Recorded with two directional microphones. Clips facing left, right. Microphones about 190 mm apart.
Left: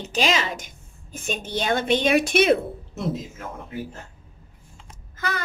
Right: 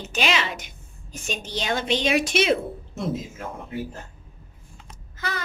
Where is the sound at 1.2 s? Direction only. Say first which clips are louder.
Left 3 dB; 55° left (ahead or behind).